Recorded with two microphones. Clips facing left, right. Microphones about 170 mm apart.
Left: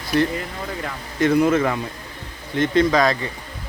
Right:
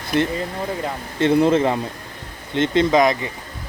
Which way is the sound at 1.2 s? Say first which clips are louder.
Right 1 dB; 25° right (ahead or behind).